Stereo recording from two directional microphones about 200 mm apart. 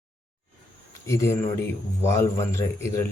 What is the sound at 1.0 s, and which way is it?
Speech, 15° left (ahead or behind).